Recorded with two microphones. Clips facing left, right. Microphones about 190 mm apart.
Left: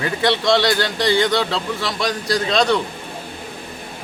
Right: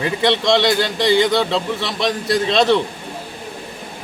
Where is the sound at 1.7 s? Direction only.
25° right (ahead or behind).